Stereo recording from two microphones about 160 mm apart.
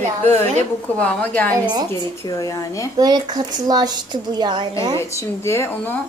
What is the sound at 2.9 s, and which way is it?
A woman's voice, 25° right (ahead or behind).